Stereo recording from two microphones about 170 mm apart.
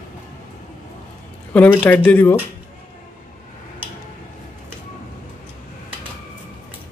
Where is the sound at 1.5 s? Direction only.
10° left (ahead or behind).